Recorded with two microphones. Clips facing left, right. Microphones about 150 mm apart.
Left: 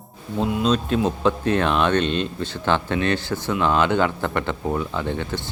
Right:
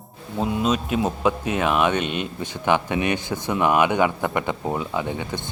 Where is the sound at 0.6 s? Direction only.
5° right (ahead or behind).